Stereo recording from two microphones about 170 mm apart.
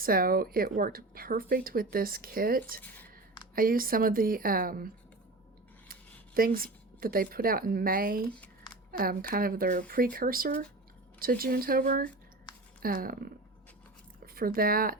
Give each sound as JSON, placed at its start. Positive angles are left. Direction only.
{"t": 0.0, "sound": "speech", "side_deg": -60}
{"t": 5.9, "sound": "speech", "side_deg": -60}
{"t": 14.3, "sound": "speech", "side_deg": -60}